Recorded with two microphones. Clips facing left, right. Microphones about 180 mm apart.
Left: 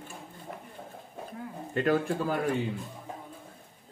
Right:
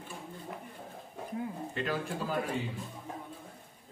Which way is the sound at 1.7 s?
50° left (ahead or behind).